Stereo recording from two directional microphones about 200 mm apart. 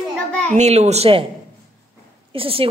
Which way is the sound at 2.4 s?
30° right (ahead or behind).